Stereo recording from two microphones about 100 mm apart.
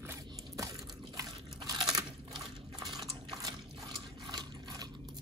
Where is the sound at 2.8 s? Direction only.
40° right (ahead or behind).